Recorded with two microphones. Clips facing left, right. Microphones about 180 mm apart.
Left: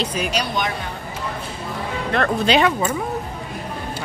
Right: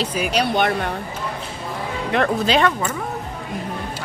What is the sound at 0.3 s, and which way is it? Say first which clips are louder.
Speech: right 4 dB; 60° right (ahead or behind).